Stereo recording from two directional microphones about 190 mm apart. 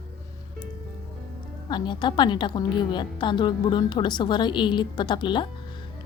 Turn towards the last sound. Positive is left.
turn(degrees=25)  # may be behind; listen again after turning